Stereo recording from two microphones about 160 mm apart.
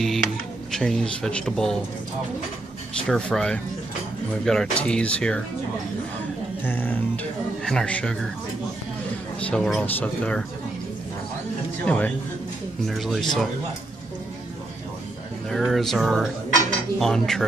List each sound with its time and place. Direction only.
0.0 s speech: centre (ahead or behind)
3.1 s speech: 5° left (ahead or behind)
6.6 s speech: 10° left (ahead or behind)
9.4 s speech: 5° left (ahead or behind)
11.8 s speech: 10° left (ahead or behind)
15.5 s speech: centre (ahead or behind)